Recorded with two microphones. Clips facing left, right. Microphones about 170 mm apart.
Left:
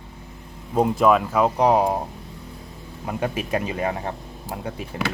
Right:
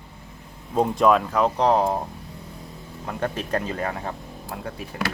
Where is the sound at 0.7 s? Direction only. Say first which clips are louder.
Left 1 dB; 5° left (ahead or behind).